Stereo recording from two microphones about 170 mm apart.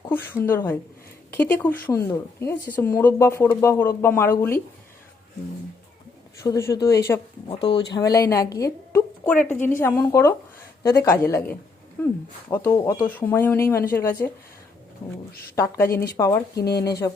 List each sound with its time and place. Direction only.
0.1 s speech: 10° left (ahead or behind)
6.4 s speech: 15° left (ahead or behind)
7.4 s speech: 30° left (ahead or behind); by 14.3 s 15° left (ahead or behind)
15.5 s speech: 15° left (ahead or behind)